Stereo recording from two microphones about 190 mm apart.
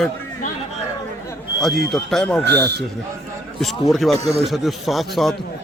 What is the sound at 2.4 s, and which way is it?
Speech, 60° right (ahead or behind).